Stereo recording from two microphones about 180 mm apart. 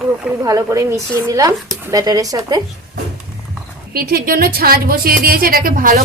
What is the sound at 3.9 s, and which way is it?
A woman's voice, 55° right (ahead or behind).